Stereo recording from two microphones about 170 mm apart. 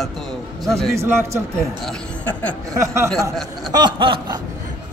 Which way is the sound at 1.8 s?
10° left (ahead or behind).